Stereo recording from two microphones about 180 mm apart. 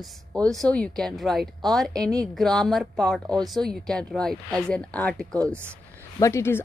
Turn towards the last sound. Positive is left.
turn(degrees=15)  # may be behind; listen again after turning